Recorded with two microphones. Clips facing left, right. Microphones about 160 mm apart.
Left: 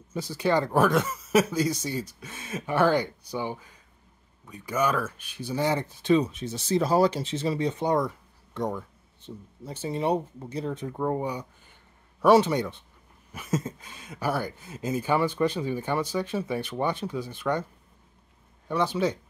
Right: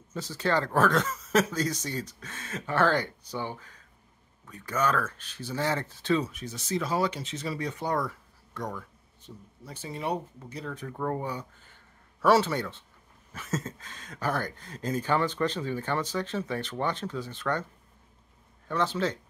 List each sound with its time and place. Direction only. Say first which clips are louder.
0.1 s speech: left 3 dB; 10° left (ahead or behind)
18.7 s speech: left 3 dB; 10° left (ahead or behind)